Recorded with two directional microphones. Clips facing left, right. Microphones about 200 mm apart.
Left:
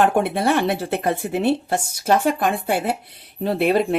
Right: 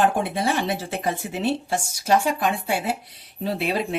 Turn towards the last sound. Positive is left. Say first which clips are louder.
# left 6 dB
turn(degrees=55)  # may be behind; listen again after turning